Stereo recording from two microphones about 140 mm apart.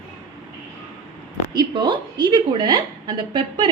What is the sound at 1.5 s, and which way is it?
A woman's voice, 30° right (ahead or behind).